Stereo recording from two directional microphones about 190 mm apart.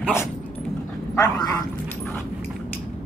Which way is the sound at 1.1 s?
15° left (ahead or behind).